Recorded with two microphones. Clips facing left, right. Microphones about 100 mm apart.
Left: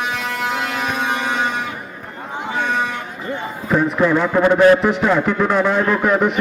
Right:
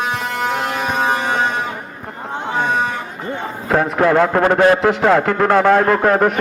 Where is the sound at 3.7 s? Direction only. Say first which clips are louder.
Right 2 dB; 60° right (ahead or behind).